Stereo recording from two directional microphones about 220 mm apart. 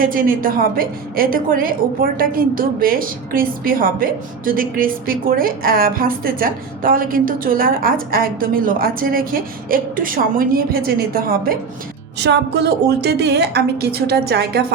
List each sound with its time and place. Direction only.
0.0 s a woman's voice: 40° right (ahead or behind)